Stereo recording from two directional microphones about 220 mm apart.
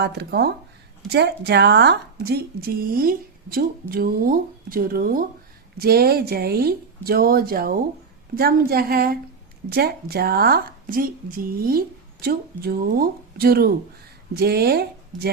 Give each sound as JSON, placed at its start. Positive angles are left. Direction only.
{"t": 0.0, "sound": "speech", "side_deg": -50}